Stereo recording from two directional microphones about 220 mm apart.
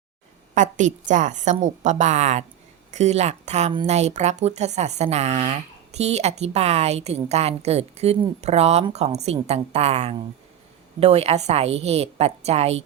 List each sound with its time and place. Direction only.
0.5 s a woman's voice: 35° right (ahead or behind)